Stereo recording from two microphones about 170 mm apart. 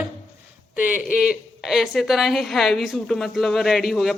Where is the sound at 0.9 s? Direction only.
55° left (ahead or behind).